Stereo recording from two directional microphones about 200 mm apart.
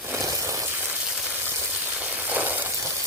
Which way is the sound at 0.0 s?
15° right (ahead or behind).